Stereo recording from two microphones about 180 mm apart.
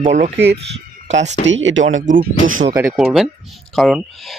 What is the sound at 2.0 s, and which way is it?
Speech, 45° right (ahead or behind).